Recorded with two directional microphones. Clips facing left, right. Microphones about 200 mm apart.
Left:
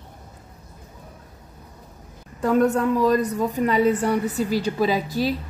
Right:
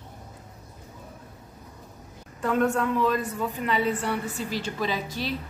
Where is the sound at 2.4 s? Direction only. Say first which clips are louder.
Left 5 dB; 40° left (ahead or behind).